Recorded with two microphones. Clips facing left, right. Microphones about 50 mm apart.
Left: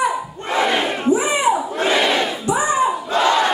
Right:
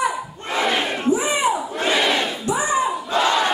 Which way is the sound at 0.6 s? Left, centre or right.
Centre.